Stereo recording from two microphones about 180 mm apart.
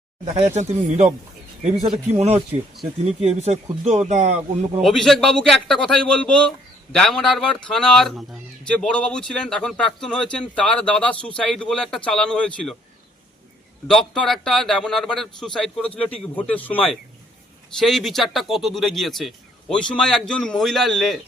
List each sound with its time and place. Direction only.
0.3 s speech: 40° right (ahead or behind)
2.1 s speech: 35° right (ahead or behind)
4.8 s a man's voice: centre (ahead or behind)
13.8 s a man's voice: 5° left (ahead or behind)